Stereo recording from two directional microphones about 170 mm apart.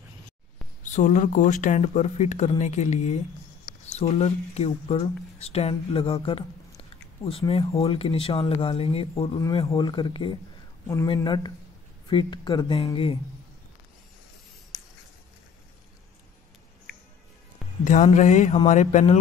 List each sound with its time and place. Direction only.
0.8 s speech: 45° left (ahead or behind)
17.8 s speech: 45° left (ahead or behind)